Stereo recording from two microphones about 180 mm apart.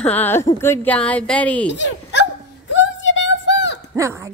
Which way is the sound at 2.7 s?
90° left.